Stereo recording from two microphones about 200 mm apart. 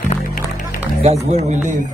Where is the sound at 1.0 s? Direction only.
35° right (ahead or behind).